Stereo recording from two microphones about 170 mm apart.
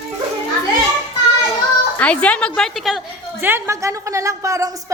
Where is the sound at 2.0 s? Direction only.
10° left (ahead or behind).